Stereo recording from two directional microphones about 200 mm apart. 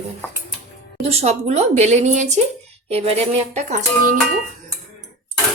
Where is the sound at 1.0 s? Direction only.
35° right (ahead or behind).